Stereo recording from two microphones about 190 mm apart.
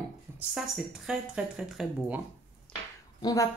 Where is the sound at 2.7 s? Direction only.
5° left (ahead or behind).